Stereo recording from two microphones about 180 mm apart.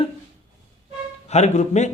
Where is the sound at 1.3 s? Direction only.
40° left (ahead or behind).